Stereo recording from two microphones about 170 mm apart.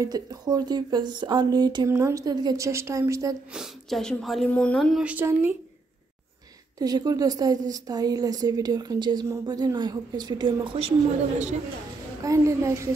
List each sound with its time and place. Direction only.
0.0 s a woman's voice: 20° right (ahead or behind)
3.5 s speech: centre (ahead or behind)
5.0 s a woman's voice: 10° right (ahead or behind)
6.8 s a woman's voice: 25° right (ahead or behind); by 11.5 s 40° right (ahead or behind)
12.2 s a woman's voice: 20° right (ahead or behind)